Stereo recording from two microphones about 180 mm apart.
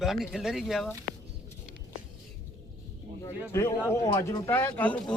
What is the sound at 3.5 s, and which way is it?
Speech, 15° left (ahead or behind).